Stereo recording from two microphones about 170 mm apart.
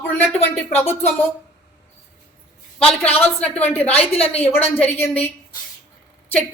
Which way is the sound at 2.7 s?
5° left (ahead or behind).